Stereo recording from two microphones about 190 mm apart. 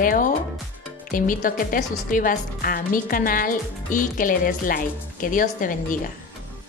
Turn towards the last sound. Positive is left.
turn(degrees=45)  # may be behind; listen again after turning